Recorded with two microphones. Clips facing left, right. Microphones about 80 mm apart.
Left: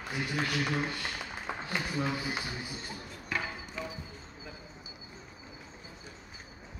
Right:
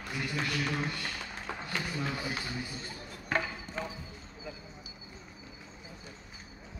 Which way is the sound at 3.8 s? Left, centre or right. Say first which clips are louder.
Right 2 dB; right.